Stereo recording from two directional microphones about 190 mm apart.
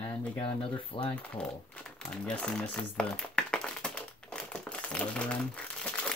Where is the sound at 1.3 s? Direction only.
5° left (ahead or behind).